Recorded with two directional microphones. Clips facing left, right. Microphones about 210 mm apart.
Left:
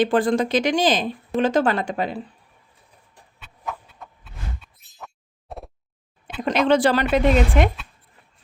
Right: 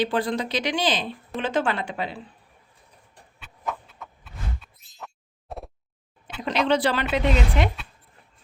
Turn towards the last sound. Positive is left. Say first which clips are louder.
# left 5 dB
turn(degrees=45)  # may be behind; listen again after turning